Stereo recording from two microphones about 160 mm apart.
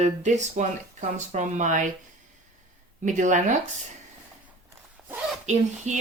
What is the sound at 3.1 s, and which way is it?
Speech, 50° right (ahead or behind).